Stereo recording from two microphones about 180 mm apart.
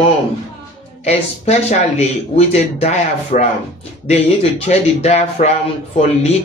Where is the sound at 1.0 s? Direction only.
35° left (ahead or behind).